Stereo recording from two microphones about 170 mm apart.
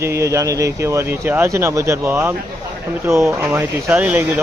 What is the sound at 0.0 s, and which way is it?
Speech, 15° right (ahead or behind).